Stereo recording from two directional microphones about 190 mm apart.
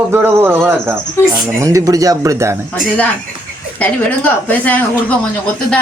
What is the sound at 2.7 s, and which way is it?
Speech, 5° left (ahead or behind).